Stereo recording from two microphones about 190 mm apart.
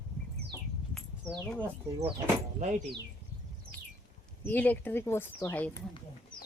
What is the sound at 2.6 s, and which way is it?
Speech, 40° right (ahead or behind).